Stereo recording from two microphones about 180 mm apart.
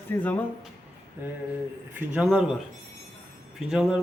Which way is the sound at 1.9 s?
5° right (ahead or behind).